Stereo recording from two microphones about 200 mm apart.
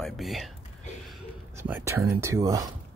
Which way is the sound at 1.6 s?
10° right (ahead or behind).